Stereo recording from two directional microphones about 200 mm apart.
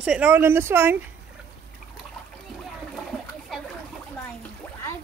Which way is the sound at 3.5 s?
Centre (ahead or behind).